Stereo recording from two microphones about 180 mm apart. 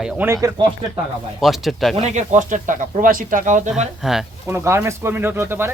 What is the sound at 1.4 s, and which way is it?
Speech, centre (ahead or behind).